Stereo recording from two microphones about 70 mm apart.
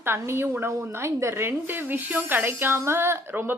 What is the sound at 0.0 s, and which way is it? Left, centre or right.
Speech, right.